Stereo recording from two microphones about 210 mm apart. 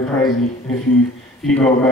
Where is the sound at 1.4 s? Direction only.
5° left (ahead or behind).